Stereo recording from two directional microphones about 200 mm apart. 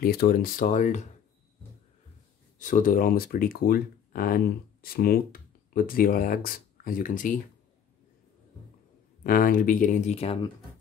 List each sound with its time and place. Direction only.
0.0 s speech: 50° left (ahead or behind)
2.6 s speech: 40° left (ahead or behind)
9.2 s speech: 45° left (ahead or behind); by 10.5 s 30° left (ahead or behind)